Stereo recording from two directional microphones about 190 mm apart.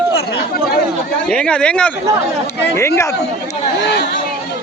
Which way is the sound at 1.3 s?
5° left (ahead or behind).